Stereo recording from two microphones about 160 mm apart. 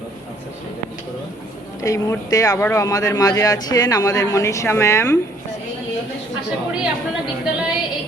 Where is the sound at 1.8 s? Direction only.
20° left (ahead or behind).